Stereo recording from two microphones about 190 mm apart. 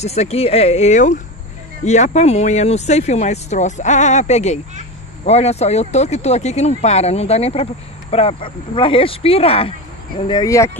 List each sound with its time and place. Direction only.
0.0 s speech: 35° left (ahead or behind); by 10.7 s 15° left (ahead or behind)